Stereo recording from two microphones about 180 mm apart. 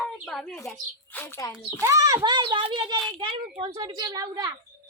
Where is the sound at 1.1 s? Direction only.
15° left (ahead or behind).